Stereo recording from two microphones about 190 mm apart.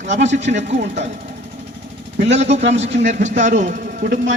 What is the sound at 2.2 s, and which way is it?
Speech, 35° right (ahead or behind).